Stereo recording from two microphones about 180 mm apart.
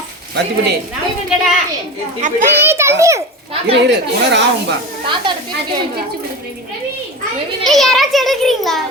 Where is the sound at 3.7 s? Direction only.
75° right (ahead or behind).